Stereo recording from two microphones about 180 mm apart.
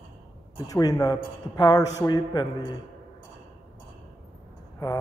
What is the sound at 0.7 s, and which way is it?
A man's voice, 20° left (ahead or behind).